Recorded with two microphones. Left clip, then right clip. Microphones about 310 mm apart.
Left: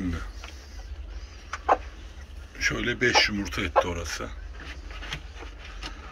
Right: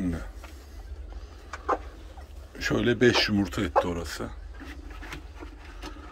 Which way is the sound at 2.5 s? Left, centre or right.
Right.